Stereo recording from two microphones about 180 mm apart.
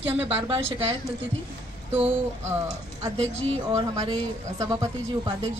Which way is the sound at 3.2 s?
35° right (ahead or behind).